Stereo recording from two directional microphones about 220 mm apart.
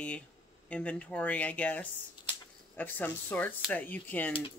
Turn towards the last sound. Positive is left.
turn(degrees=5)  # may be behind; listen again after turning